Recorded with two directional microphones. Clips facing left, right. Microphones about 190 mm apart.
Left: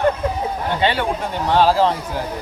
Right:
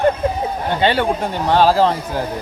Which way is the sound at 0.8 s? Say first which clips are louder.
Right 4 dB; 35° right (ahead or behind).